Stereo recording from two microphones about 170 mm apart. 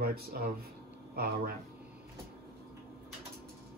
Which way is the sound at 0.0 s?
65° right (ahead or behind).